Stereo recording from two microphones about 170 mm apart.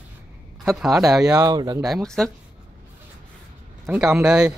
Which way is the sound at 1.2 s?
20° right (ahead or behind).